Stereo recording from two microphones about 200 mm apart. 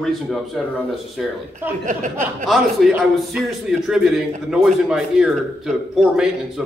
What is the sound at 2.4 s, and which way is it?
A man's voice, centre (ahead or behind).